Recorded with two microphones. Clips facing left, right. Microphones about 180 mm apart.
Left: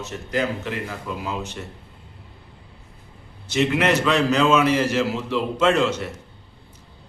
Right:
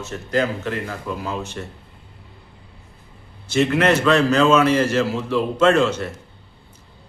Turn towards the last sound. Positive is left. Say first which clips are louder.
# right 3 dB
turn(degrees=15)  # may be behind; listen again after turning